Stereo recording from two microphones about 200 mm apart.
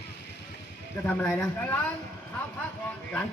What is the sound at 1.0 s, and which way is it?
Speech, 5° left (ahead or behind).